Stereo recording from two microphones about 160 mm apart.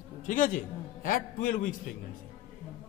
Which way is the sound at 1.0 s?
60° left (ahead or behind).